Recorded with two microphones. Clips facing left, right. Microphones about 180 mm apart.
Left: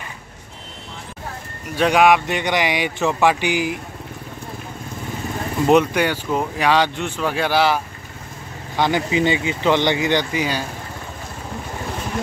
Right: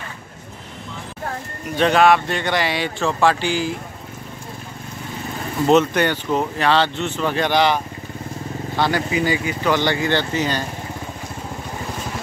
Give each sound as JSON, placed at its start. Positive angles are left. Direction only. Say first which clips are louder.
{"t": 1.8, "sound": "speech", "louder": "even", "side_deg": 10}
{"t": 5.7, "sound": "speech", "louder": "even", "side_deg": 10}
{"t": 8.7, "sound": "speech", "louder": "left 2 dB", "side_deg": 20}